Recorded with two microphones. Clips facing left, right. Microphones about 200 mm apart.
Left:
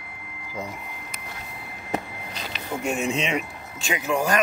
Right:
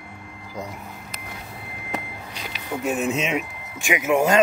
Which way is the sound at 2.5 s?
Centre (ahead or behind).